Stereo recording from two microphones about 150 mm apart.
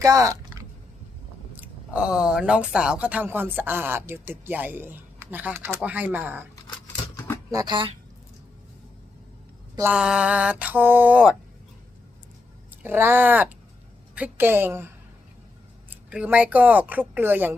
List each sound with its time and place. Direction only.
0.0 s a sound: 20° right (ahead or behind)
1.5 s speech: 10° right (ahead or behind)
7.5 s speech: 25° right (ahead or behind)
9.8 s speech: 5° right (ahead or behind)
12.8 s speech: 15° right (ahead or behind)
15.9 s speech: 10° right (ahead or behind)